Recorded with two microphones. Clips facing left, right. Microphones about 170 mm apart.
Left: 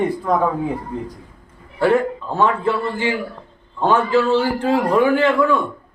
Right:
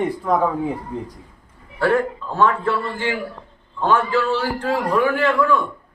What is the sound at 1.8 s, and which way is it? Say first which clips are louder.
A man's voice: left 2 dB; 20° left (ahead or behind).